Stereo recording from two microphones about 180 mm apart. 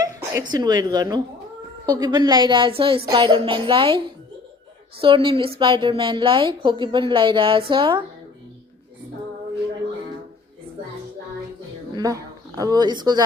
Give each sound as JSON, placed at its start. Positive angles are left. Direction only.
{"t": 0.0, "sound": "a sound", "side_deg": -20}
{"t": 0.5, "sound": "a woman's voice", "side_deg": -20}
{"t": 11.9, "sound": "speech", "side_deg": -20}